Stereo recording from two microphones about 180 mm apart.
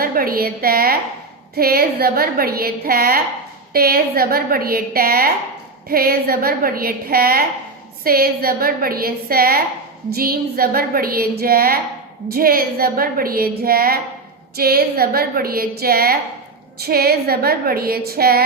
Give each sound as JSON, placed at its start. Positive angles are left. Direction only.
{"t": 0.0, "sound": "speech", "side_deg": -55}